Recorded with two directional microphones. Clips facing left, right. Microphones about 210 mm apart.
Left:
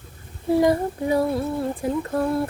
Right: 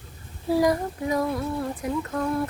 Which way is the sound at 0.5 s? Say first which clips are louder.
Left 3 dB; 25° left (ahead or behind).